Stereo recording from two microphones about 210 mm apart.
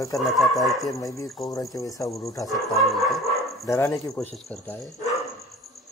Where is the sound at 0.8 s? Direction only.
15° left (ahead or behind).